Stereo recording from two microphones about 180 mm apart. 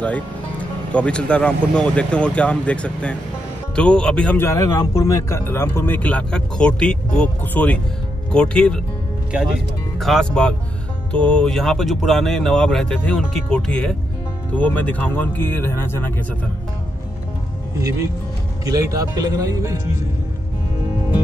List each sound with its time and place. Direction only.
0.0 s speech: 10° left (ahead or behind)
9.3 s speech: 5° right (ahead or behind); by 16.1 s 10° left (ahead or behind)
17.7 s speech: 15° right (ahead or behind)